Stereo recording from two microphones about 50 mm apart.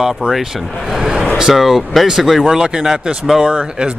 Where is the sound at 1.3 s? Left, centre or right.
Centre.